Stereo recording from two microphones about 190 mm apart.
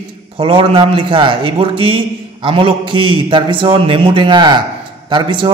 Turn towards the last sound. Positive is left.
turn(degrees=-25)  # may be behind; listen again after turning